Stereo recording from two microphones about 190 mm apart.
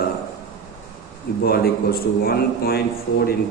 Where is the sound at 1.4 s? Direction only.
55° left (ahead or behind).